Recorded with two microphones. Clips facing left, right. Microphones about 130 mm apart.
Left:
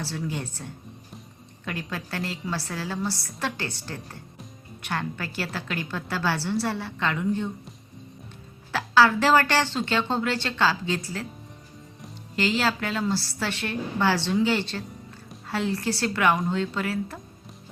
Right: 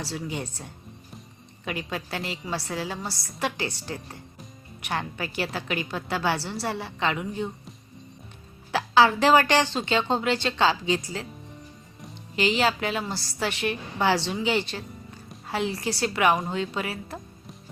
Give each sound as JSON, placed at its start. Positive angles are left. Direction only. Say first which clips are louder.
{"t": 0.0, "sound": "a woman's voice", "louder": "left 1 dB", "side_deg": -15}
{"t": 8.7, "sound": "a woman's voice", "louder": "even", "side_deg": -20}
{"t": 12.4, "sound": "a woman's voice", "louder": "right 1 dB", "side_deg": -15}